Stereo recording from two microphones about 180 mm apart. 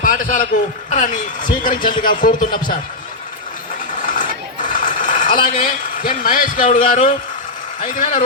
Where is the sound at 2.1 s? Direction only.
50° left (ahead or behind).